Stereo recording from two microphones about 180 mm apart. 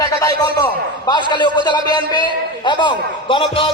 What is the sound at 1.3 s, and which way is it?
A man's voice, 25° left (ahead or behind).